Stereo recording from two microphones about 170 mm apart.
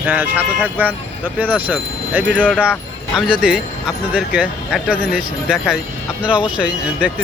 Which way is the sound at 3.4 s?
5° right (ahead or behind).